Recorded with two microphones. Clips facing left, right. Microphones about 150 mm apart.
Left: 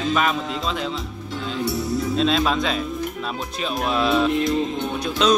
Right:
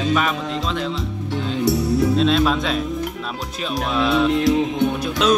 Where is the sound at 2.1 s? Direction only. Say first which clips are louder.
Right 3 dB; centre (ahead or behind).